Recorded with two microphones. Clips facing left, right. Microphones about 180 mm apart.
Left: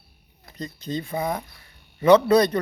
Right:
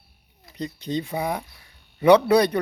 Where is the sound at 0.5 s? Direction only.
15° right (ahead or behind).